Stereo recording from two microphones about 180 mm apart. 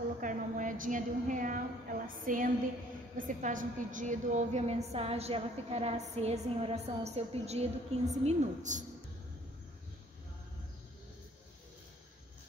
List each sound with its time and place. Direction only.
0.2 s a woman's voice: 45° right (ahead or behind)